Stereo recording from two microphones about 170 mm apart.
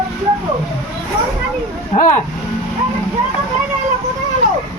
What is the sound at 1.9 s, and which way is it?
Speech, 45° left (ahead or behind).